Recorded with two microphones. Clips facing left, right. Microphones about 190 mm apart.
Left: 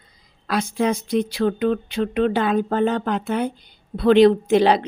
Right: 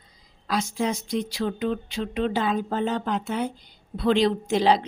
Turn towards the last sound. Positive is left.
turn(degrees=60)  # may be behind; listen again after turning